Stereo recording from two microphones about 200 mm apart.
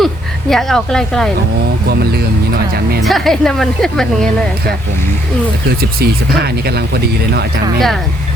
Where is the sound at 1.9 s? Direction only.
50° right (ahead or behind).